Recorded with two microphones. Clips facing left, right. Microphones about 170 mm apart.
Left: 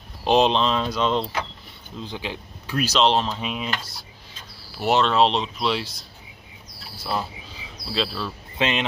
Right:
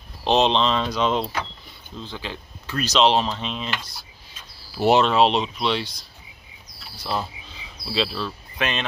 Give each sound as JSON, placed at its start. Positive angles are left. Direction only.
{"t": 0.2, "sound": "speech", "side_deg": 5}
{"t": 2.0, "sound": "speech", "side_deg": 15}
{"t": 3.3, "sound": "speech", "side_deg": 10}
{"t": 4.8, "sound": "speech", "side_deg": -15}
{"t": 5.1, "sound": "speech", "side_deg": -5}
{"t": 8.5, "sound": "speech", "side_deg": 20}